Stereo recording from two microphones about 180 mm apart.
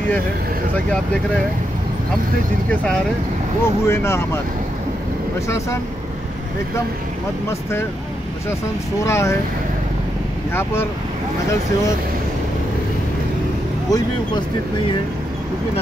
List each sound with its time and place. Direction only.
0.8 s speech: 5° left (ahead or behind)
2.7 s speech: 5° left (ahead or behind)
9.0 s speech: 15° left (ahead or behind)
10.5 s speech: 15° left (ahead or behind)
13.8 s speech: 20° left (ahead or behind)